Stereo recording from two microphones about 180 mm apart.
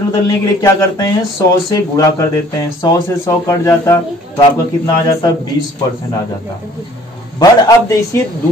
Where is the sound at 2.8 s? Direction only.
15° left (ahead or behind).